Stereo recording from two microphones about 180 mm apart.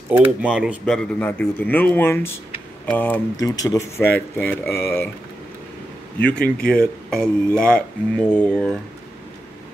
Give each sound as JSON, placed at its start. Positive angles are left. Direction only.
{"t": 0.1, "sound": "speech", "side_deg": -5}
{"t": 0.8, "sound": "speech", "side_deg": 5}
{"t": 6.1, "sound": "speech", "side_deg": 5}